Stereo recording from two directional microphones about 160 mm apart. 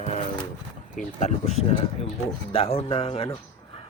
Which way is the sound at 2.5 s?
35° left (ahead or behind).